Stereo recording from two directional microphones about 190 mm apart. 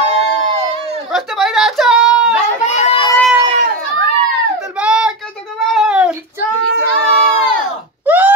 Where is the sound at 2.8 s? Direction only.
30° left (ahead or behind).